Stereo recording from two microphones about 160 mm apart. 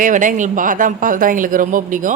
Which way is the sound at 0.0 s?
55° right (ahead or behind).